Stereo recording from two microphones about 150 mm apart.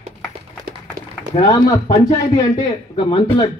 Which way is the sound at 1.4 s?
25° left (ahead or behind).